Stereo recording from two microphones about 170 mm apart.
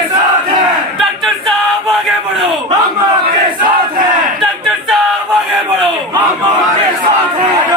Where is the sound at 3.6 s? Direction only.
55° right (ahead or behind).